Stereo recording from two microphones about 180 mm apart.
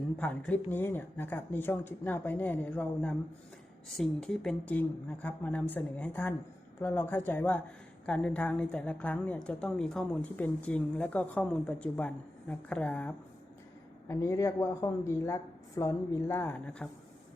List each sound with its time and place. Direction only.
0.2 s a woman's voice: 5° left (ahead or behind)